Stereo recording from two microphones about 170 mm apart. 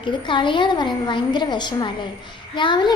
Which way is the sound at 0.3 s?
30° left (ahead or behind).